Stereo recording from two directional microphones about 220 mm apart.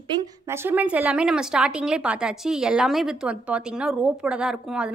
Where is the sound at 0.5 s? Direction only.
10° right (ahead or behind).